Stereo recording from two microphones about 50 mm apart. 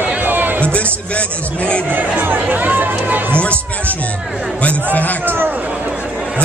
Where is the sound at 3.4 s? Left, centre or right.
Left.